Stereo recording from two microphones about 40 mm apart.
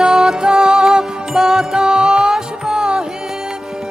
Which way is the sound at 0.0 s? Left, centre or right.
Centre.